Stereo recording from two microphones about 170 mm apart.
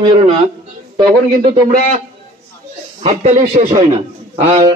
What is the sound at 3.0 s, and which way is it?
Speech, 40° right (ahead or behind).